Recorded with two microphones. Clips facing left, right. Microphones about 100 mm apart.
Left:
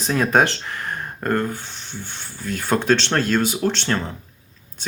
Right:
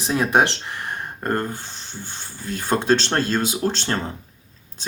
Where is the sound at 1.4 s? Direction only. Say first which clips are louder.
Left 2 dB; 15° right (ahead or behind).